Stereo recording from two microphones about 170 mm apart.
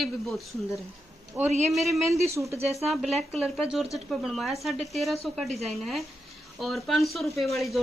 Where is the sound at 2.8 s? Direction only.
Centre (ahead or behind).